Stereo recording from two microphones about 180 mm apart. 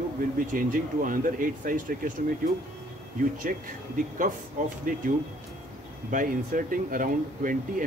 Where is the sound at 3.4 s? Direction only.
50° right (ahead or behind).